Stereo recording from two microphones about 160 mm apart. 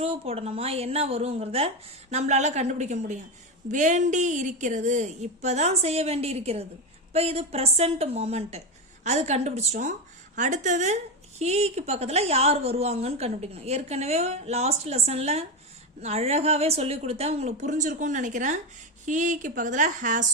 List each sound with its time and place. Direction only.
0.0 s a woman's voice: 40° right (ahead or behind); by 20.2 s 55° right (ahead or behind)